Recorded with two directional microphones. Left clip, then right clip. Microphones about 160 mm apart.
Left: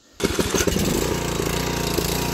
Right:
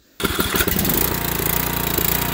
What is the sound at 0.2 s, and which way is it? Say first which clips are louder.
Vehicle: right 1 dB; 10° right (ahead or behind).